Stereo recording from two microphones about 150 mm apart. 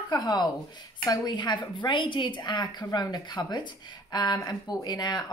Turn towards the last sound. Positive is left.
turn(degrees=30)  # may be behind; listen again after turning